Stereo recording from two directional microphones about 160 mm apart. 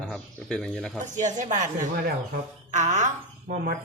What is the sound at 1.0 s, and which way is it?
A woman's voice, 50° right (ahead or behind).